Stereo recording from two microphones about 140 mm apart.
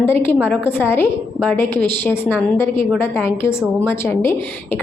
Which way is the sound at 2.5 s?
15° left (ahead or behind).